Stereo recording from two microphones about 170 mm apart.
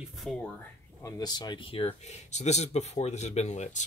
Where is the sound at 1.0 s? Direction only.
20° left (ahead or behind).